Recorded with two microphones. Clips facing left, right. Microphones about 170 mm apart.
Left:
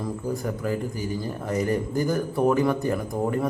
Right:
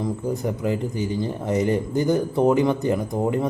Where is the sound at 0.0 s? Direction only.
20° right (ahead or behind).